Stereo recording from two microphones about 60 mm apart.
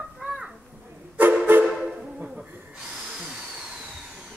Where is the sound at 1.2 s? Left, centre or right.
Right.